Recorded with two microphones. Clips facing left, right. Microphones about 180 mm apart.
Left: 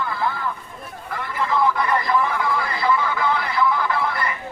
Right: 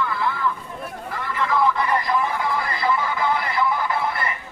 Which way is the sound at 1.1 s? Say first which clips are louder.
Left 1 dB; 55° left (ahead or behind).